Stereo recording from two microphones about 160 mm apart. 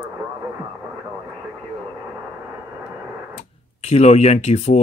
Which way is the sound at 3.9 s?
45° left (ahead or behind).